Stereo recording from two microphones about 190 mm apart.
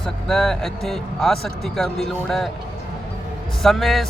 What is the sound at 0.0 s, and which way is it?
Speech, centre (ahead or behind).